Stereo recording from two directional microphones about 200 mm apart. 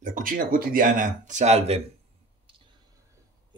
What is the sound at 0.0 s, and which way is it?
Speech, 45° right (ahead or behind).